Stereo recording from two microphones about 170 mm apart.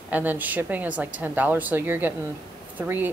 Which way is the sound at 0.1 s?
10° right (ahead or behind).